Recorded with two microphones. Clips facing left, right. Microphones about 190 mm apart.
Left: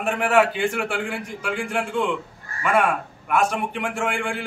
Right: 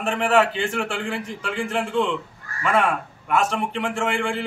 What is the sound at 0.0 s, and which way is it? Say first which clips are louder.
A man's voice: even; 5° left (ahead or behind).